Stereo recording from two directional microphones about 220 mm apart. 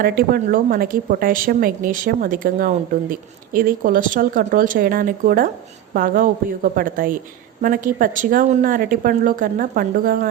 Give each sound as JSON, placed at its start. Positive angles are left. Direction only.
{"t": 0.0, "sound": "a woman's voice", "side_deg": -40}